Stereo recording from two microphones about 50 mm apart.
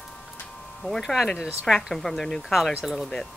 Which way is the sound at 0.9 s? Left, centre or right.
Centre.